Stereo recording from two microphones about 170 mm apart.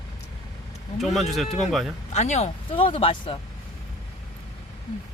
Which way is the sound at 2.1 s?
40° left (ahead or behind).